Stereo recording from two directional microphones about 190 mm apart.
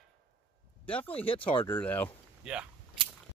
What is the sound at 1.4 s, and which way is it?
Speech, 10° left (ahead or behind).